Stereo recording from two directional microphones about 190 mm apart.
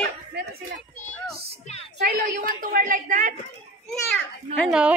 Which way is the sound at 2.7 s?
45° right (ahead or behind).